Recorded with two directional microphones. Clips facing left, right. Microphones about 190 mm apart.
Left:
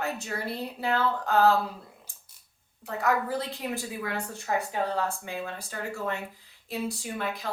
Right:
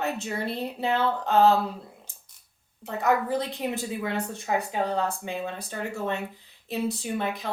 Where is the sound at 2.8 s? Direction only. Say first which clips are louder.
Right 3 dB; 20° right (ahead or behind).